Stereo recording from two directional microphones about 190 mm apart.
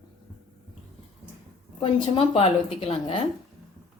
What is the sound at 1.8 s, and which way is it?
A woman's voice, 30° left (ahead or behind).